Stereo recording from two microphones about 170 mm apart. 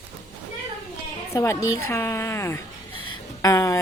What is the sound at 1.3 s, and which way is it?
A woman's voice, 15° left (ahead or behind).